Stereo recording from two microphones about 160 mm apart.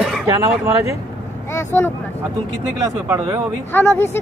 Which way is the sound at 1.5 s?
15° left (ahead or behind).